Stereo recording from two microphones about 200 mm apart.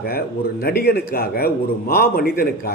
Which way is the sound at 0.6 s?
50° left (ahead or behind).